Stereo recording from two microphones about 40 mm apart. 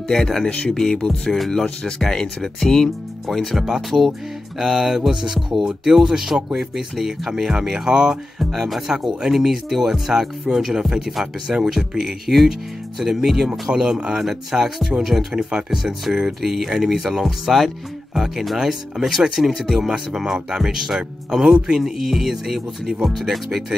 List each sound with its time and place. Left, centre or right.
0.1 s speech: centre
0.9 s music: centre
1.3 s speech: centre
3.6 s speech: centre
7.7 s speech: centre
8.4 s speech: centre